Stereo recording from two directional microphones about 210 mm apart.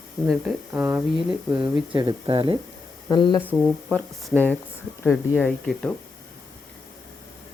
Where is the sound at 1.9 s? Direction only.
25° right (ahead or behind).